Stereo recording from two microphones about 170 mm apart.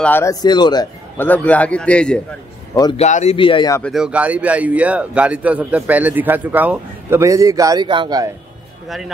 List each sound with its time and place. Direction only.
0.0 s speech: 15° left (ahead or behind)
1.1 s a man's voice: 10° left (ahead or behind)
2.7 s speech: 25° left (ahead or behind)
3.0 s speech: 40° left (ahead or behind)
3.3 s speech: 30° left (ahead or behind)
3.8 s speech: 5° right (ahead or behind); by 8.3 s 25° right (ahead or behind)
8.8 s speech: centre (ahead or behind)